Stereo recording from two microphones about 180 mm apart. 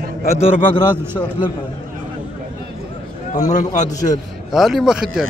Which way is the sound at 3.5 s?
40° left (ahead or behind).